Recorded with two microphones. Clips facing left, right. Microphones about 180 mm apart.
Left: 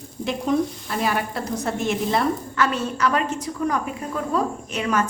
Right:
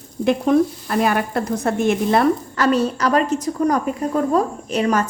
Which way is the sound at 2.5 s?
40° right (ahead or behind).